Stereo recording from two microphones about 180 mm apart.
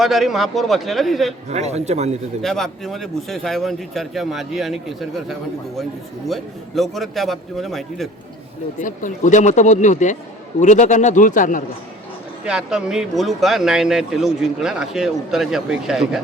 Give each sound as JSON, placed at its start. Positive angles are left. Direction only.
{"t": 0.0, "sound": "speech", "side_deg": 0}
{"t": 1.5, "sound": "a man's voice", "side_deg": -40}
{"t": 2.4, "sound": "speech", "side_deg": 0}
{"t": 8.8, "sound": "speech", "side_deg": 45}
{"t": 12.5, "sound": "speech", "side_deg": -5}